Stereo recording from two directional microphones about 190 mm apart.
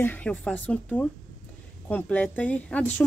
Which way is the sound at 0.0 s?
10° left (ahead or behind).